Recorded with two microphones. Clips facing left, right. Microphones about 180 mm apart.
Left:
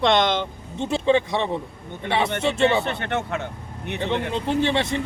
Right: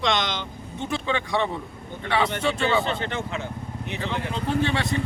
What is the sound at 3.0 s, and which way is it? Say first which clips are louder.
Speech: left 3 dB; 65° left (ahead or behind).